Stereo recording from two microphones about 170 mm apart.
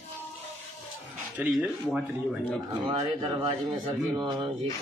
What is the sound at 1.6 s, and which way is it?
Speech, 10° right (ahead or behind).